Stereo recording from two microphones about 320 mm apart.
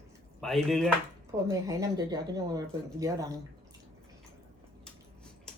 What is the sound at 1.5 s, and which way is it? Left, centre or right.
Speech, centre.